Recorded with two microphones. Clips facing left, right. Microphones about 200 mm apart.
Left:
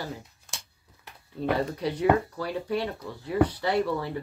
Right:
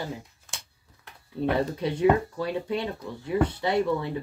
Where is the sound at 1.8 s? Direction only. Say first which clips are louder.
Right 2 dB; 25° right (ahead or behind).